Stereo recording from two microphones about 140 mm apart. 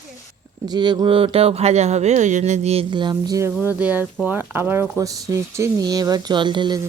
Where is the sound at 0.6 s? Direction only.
30° right (ahead or behind); by 2.8 s 50° right (ahead or behind).